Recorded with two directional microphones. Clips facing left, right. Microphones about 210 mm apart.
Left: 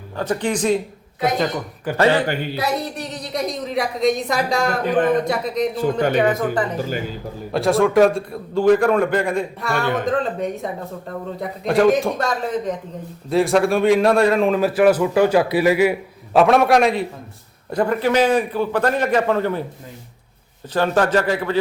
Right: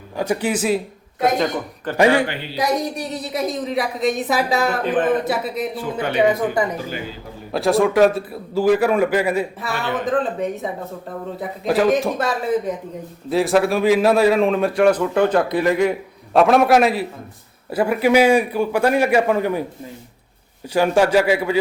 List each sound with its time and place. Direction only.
0.2 s a man's voice: 10° right (ahead or behind)
1.4 s speech: 10° left (ahead or behind)
2.0 s a man's voice: 10° right (ahead or behind)
2.2 s speech: 45° left (ahead or behind)
2.6 s a man's voice: 10° right (ahead or behind)
5.7 s speech: 45° left (ahead or behind)
6.1 s a man's voice: 10° right (ahead or behind)
7.5 s a man's voice: centre (ahead or behind)
20.7 s a man's voice: 10° right (ahead or behind)